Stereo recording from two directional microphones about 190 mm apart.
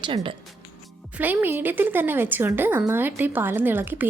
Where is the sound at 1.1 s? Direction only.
10° right (ahead or behind).